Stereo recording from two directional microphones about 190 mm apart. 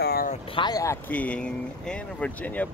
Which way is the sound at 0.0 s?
55° left (ahead or behind).